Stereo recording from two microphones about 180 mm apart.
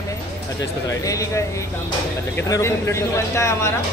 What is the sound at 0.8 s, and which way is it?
Speech, 20° left (ahead or behind).